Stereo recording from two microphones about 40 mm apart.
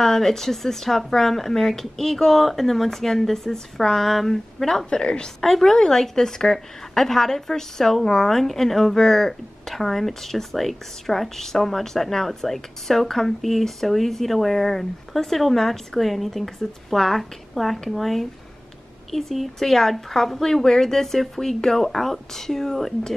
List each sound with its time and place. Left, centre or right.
0.0 s a woman's voice: centre
4.8 s speech: left
5.4 s a woman's voice: centre